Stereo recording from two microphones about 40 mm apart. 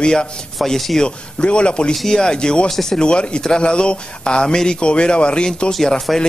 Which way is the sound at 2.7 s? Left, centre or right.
Centre.